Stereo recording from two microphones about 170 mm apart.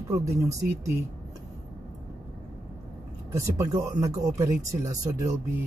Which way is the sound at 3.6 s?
20° right (ahead or behind).